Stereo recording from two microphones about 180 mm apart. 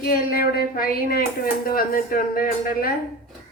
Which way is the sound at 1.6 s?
55° left (ahead or behind).